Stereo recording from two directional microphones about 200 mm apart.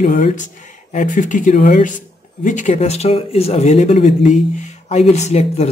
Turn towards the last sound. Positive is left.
turn(degrees=35)  # may be behind; listen again after turning